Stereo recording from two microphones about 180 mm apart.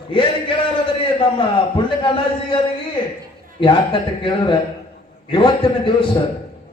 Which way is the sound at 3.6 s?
30° left (ahead or behind).